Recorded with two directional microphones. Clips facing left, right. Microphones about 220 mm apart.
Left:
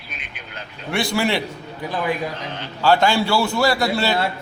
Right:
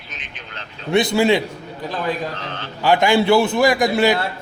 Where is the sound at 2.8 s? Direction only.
15° right (ahead or behind).